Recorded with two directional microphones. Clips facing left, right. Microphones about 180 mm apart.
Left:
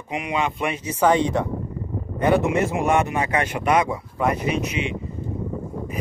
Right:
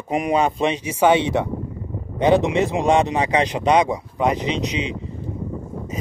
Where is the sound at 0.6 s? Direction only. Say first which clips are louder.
Right 3 dB; 15° right (ahead or behind).